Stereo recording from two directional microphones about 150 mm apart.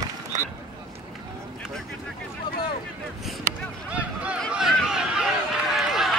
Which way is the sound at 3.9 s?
10° right (ahead or behind).